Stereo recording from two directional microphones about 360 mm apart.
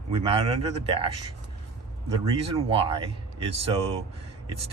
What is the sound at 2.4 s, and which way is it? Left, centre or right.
Speech, centre.